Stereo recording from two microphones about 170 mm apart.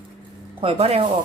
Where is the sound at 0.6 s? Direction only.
35° right (ahead or behind).